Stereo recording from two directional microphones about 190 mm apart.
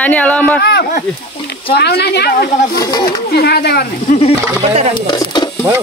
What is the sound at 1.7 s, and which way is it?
Speech, 55° left (ahead or behind).